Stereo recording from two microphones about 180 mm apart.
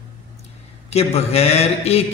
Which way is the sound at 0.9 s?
35° left (ahead or behind).